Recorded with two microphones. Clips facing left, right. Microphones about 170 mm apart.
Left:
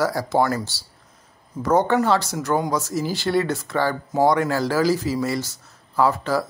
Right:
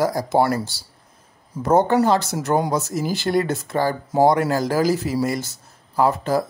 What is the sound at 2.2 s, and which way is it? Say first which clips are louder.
Speech: right 2 dB; 25° right (ahead or behind).